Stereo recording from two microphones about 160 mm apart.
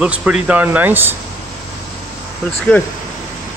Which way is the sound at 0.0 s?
5° right (ahead or behind).